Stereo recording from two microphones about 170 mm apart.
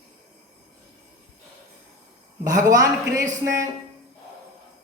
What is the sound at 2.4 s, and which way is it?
Speech, 20° right (ahead or behind).